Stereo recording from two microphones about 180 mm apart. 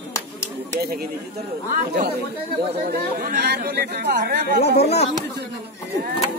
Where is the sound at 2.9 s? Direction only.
60° right (ahead or behind).